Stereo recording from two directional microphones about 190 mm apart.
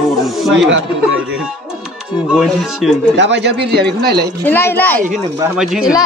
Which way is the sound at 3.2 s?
70° right (ahead or behind).